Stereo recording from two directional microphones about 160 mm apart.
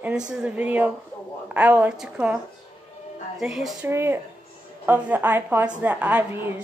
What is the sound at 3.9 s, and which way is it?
A woman's voice, 15° right (ahead or behind).